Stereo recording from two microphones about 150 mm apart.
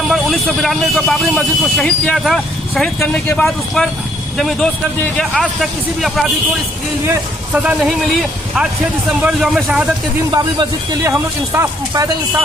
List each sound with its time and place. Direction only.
0.1 s speech: centre (ahead or behind)
7.5 s speech: 5° right (ahead or behind)
10.3 s speech: 20° right (ahead or behind)